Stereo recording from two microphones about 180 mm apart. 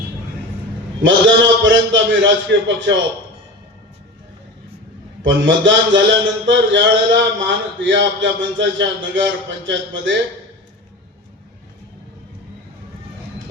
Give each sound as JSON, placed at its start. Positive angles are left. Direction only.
{"t": 1.0, "sound": "a man's voice", "side_deg": -90}
{"t": 5.2, "sound": "a man's voice", "side_deg": -90}